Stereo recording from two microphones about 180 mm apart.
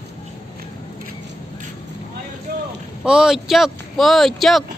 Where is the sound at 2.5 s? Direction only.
60° right (ahead or behind).